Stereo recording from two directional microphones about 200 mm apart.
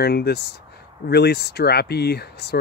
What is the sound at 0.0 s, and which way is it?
Speech, 55° left (ahead or behind).